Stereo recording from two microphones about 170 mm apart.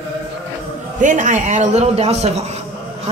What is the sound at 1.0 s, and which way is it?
A man's voice, 45° right (ahead or behind).